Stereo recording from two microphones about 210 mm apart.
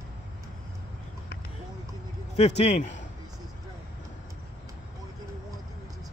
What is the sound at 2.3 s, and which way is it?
Speech, 30° left (ahead or behind).